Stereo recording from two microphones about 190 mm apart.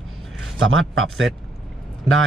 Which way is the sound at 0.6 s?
90° right.